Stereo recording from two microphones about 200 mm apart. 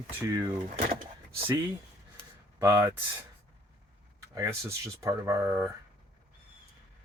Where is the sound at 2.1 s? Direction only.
15° right (ahead or behind).